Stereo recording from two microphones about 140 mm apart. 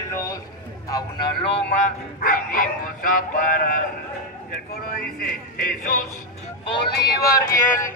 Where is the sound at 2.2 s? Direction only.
90° left.